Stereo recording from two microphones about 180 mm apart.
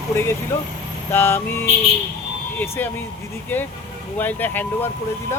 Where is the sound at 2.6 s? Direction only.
10° left (ahead or behind).